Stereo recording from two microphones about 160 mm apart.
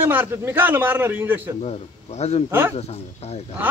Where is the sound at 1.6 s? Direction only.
40° left (ahead or behind).